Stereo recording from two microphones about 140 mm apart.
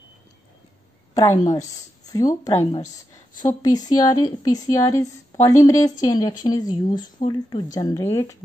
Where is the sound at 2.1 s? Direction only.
25° left (ahead or behind).